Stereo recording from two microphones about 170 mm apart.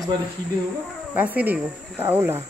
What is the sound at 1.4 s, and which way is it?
Speech, 10° right (ahead or behind).